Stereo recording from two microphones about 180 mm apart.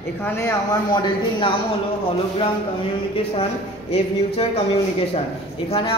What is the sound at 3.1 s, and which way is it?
Speech, 35° left (ahead or behind).